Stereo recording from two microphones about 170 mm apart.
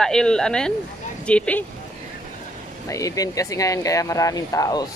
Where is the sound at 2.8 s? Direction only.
20° left (ahead or behind).